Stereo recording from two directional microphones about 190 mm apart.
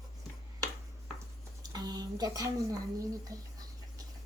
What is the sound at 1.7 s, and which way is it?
A child's voice, 20° right (ahead or behind).